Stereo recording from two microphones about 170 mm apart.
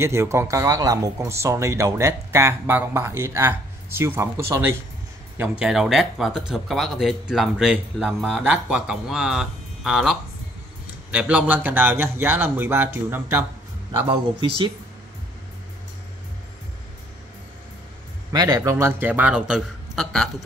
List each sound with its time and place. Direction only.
0.0 s speech: 15° right (ahead or behind)
5.4 s speech: 5° right (ahead or behind)
18.3 s speech: 25° right (ahead or behind); by 20.4 s centre (ahead or behind)